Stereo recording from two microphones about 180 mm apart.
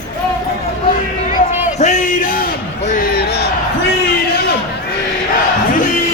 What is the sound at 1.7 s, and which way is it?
Music, 40° left (ahead or behind).